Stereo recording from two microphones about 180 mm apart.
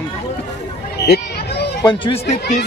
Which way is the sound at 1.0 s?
65° left (ahead or behind).